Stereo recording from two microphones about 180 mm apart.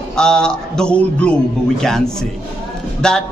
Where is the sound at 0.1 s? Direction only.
5° left (ahead or behind).